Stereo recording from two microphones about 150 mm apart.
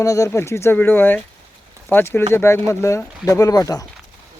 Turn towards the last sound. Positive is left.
turn(degrees=25)  # may be behind; listen again after turning